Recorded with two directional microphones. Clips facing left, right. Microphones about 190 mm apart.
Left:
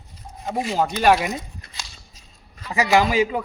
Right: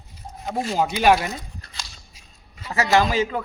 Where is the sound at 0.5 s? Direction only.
15° left (ahead or behind).